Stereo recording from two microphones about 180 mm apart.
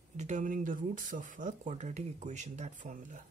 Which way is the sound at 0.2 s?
45° right (ahead or behind).